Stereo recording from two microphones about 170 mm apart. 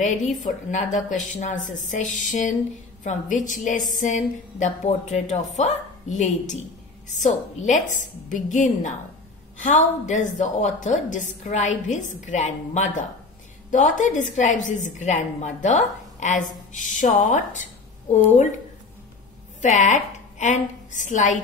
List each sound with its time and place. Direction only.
0.4 s a woman's voice: 45° left (ahead or behind)
7.6 s a woman's voice: 45° left (ahead or behind)
19.6 s a woman's voice: 45° left (ahead or behind)